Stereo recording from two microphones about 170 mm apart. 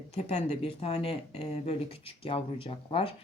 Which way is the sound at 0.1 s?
40° left (ahead or behind).